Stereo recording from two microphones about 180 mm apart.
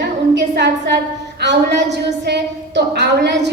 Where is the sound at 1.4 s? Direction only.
70° right (ahead or behind).